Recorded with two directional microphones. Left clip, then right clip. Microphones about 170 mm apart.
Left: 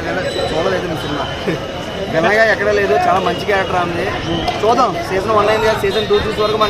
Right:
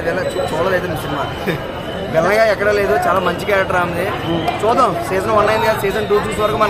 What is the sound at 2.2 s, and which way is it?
Speech, 15° right (ahead or behind).